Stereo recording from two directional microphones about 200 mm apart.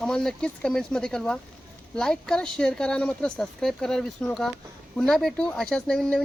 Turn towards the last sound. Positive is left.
turn(degrees=5)  # may be behind; listen again after turning